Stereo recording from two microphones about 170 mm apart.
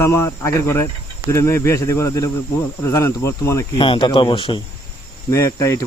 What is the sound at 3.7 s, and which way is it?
Speech, 30° left (ahead or behind).